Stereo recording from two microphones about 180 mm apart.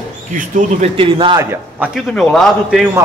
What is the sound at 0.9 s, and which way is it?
Speech, 30° right (ahead or behind).